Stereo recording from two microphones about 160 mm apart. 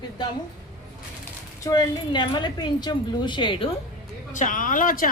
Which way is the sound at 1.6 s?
25° left (ahead or behind).